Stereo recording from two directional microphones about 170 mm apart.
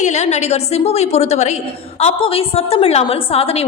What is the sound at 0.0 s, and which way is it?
A woman's voice, 40° left (ahead or behind).